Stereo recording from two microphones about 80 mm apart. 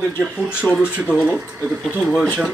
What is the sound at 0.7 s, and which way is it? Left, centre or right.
Speech, centre.